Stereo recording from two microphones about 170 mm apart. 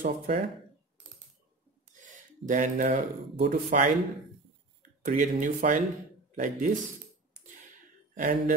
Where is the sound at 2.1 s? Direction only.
50° right (ahead or behind).